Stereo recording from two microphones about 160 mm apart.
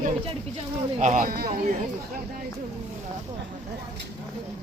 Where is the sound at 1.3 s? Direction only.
70° right (ahead or behind).